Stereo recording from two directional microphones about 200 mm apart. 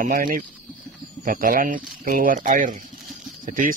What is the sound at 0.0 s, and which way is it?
Speech, 45° right (ahead or behind).